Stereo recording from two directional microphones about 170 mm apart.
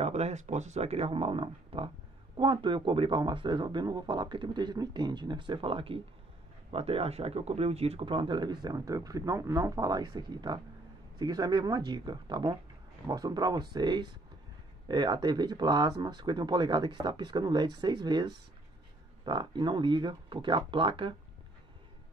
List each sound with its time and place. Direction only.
0.0 s speech: 40° right (ahead or behind)